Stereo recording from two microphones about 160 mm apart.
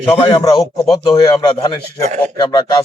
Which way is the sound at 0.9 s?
25° left (ahead or behind).